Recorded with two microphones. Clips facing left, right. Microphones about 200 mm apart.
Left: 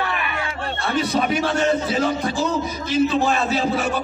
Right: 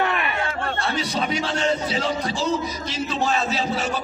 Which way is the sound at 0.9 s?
55° left (ahead or behind).